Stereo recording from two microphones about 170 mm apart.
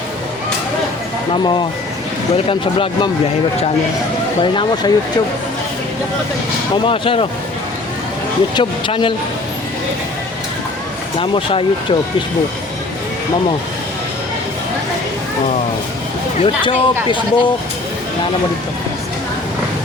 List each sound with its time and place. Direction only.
1.3 s speech: 30° left (ahead or behind)
4.4 s speech: 25° left (ahead or behind)
6.8 s speech: 30° left (ahead or behind)
8.5 s speech: 30° left (ahead or behind)
11.2 s speech: 30° left (ahead or behind)
16.4 s speech: 30° left (ahead or behind)